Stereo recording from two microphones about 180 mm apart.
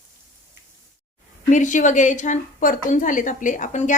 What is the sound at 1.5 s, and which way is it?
A woman's voice, 45° left (ahead or behind).